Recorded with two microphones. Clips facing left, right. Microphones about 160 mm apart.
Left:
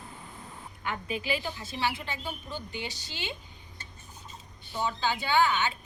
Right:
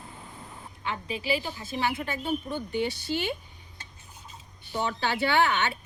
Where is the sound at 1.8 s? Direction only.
50° right (ahead or behind).